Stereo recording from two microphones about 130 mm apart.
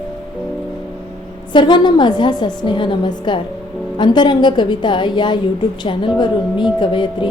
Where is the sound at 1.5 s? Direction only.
35° left (ahead or behind).